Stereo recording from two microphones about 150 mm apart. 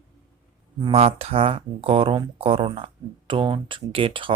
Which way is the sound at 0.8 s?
40° right (ahead or behind).